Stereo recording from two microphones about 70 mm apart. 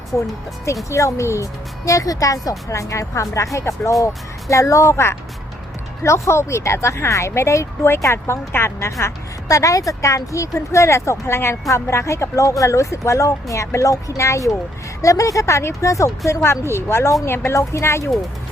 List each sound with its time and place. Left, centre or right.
0.9 s speech: left